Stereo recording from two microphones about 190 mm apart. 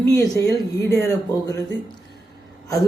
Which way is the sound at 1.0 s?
15° left (ahead or behind).